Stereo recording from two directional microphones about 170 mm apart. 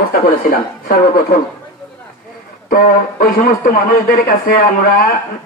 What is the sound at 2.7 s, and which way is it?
Speech, 55° left (ahead or behind).